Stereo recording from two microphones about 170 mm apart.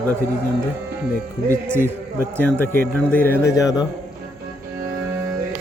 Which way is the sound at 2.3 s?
10° left (ahead or behind).